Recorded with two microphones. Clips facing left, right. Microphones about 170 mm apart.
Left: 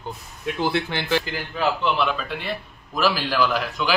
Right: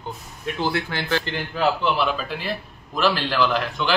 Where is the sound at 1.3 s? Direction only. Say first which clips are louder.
Right 2 dB; 5° left (ahead or behind).